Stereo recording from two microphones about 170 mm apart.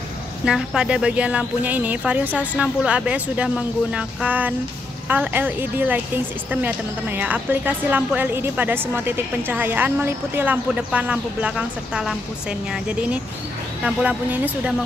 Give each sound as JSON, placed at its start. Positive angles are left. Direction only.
{"t": 0.5, "sound": "a woman's voice", "side_deg": -5}